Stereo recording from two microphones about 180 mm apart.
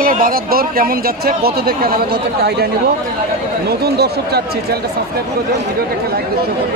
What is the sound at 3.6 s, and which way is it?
Speech, 60° right (ahead or behind).